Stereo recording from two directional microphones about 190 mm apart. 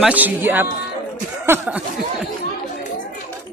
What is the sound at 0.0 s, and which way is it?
Speech, 10° right (ahead or behind).